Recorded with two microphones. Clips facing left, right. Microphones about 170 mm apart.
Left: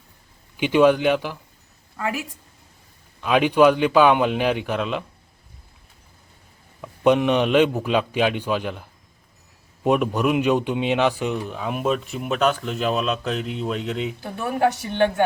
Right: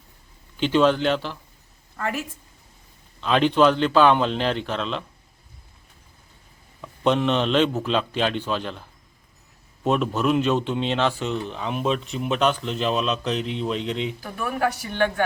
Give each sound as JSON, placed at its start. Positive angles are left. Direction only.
{"t": 0.5, "sound": "speech", "side_deg": 10}
{"t": 6.8, "sound": "speech", "side_deg": 10}
{"t": 14.2, "sound": "speech", "side_deg": 25}